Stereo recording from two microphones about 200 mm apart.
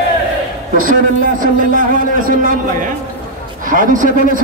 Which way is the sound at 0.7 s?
40° right (ahead or behind).